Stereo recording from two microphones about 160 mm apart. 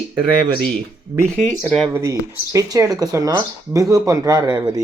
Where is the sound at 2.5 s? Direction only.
20° right (ahead or behind).